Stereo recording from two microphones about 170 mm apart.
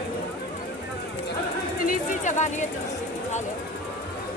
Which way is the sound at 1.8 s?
45° left (ahead or behind).